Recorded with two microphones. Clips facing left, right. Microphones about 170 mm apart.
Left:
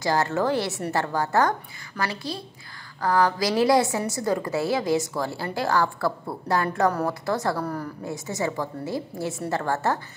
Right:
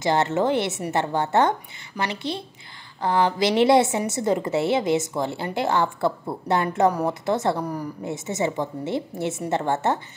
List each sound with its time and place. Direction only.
0.0 s a woman's voice: 20° right (ahead or behind)